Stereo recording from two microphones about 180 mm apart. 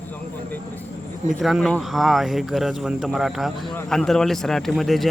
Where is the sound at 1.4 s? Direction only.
Centre (ahead or behind).